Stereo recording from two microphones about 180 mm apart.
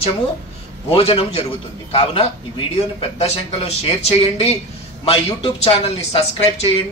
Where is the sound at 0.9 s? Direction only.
35° left (ahead or behind).